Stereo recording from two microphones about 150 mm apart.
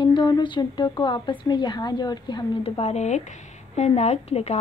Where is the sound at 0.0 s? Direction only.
30° left (ahead or behind).